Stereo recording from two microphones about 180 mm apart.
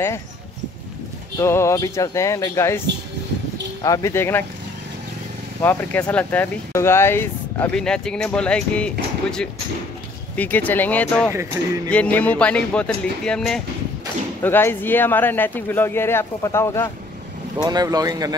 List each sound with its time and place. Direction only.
1.4 s speech: 15° left (ahead or behind)
3.8 s speech: 15° left (ahead or behind)
5.6 s speech: 10° left (ahead or behind)
11.6 s speech: 15° right (ahead or behind)
11.9 s speech: 10° left (ahead or behind)
17.6 s speech: 20° right (ahead or behind)